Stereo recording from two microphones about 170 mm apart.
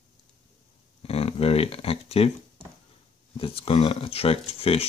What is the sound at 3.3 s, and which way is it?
Speech, 35° left (ahead or behind).